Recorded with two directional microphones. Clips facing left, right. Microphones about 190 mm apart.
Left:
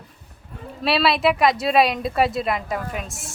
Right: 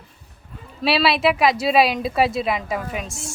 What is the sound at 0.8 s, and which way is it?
Speech, centre (ahead or behind).